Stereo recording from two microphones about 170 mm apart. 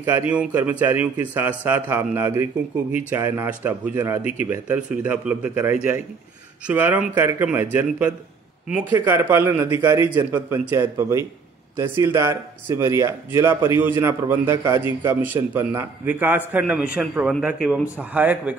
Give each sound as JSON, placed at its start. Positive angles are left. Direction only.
{"t": 0.0, "sound": "a man's voice", "side_deg": -10}